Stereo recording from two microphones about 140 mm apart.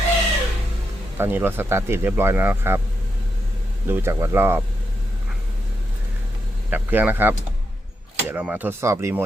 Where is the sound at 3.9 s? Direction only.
15° right (ahead or behind).